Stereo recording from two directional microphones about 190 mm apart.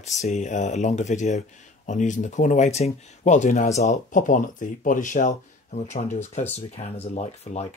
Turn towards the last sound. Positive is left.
turn(degrees=35)  # may be behind; listen again after turning